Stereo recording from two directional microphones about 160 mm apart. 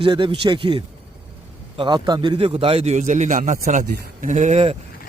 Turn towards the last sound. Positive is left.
turn(degrees=-45)  # may be behind; listen again after turning